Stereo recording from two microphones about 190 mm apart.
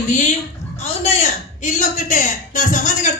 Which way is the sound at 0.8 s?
35° left (ahead or behind).